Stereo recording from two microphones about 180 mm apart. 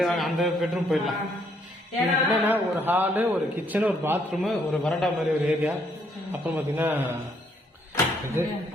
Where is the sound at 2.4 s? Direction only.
10° right (ahead or behind).